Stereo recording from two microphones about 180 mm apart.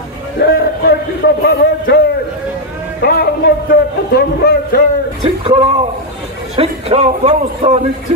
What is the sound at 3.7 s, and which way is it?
A man's voice, 60° left (ahead or behind).